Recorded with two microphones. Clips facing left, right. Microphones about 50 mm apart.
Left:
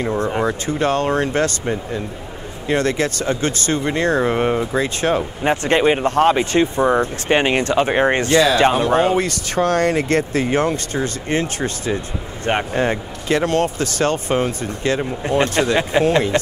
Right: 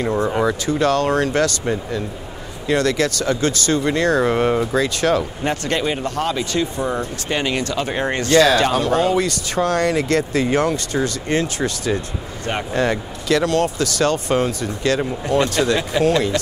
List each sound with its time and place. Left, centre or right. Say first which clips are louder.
0.4 s speech: right 1 dB; left